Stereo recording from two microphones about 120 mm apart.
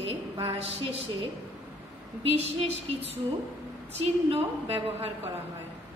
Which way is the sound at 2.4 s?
55° right (ahead or behind).